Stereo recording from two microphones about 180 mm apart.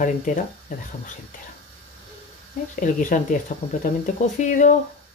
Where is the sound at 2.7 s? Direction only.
45° left (ahead or behind).